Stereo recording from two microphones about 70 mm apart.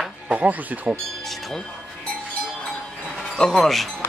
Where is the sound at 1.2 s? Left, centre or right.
Centre.